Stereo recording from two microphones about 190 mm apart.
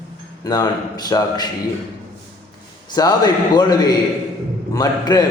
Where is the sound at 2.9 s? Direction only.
20° left (ahead or behind).